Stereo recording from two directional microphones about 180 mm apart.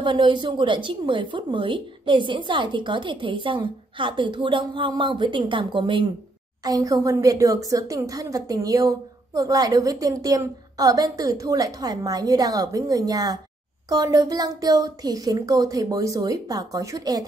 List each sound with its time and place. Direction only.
0.0 s speech: 25° right (ahead or behind)